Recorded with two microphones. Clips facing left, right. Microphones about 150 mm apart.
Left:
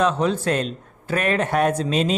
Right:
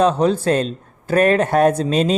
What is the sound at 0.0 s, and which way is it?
Speech, 35° right (ahead or behind).